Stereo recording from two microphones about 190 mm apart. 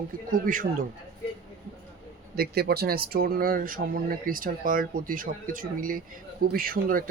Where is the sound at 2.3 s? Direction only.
55° right (ahead or behind).